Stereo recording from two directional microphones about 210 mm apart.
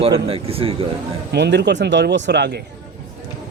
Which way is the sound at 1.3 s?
55° right (ahead or behind).